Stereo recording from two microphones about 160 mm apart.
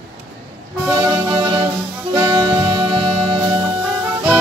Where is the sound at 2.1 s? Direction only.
20° right (ahead or behind).